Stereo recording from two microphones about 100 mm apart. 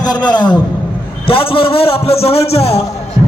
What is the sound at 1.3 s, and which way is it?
A man's voice, 65° left (ahead or behind).